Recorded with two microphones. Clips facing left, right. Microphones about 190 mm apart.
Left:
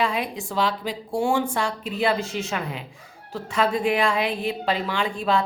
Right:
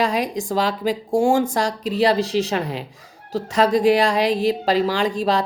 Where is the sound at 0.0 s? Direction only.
40° right (ahead or behind).